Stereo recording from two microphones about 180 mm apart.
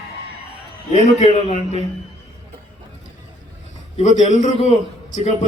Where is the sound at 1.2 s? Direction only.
40° left (ahead or behind).